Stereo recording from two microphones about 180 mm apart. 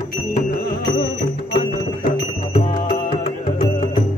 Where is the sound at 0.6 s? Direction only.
70° left (ahead or behind).